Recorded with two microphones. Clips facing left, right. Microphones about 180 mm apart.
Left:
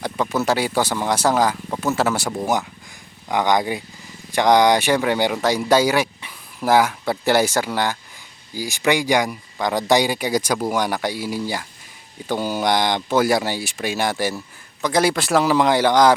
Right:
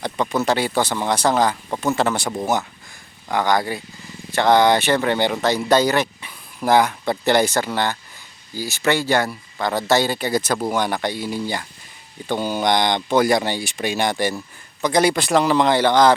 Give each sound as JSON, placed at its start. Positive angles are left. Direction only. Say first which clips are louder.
{"t": 0.0, "sound": "speech", "louder": "even", "side_deg": 5}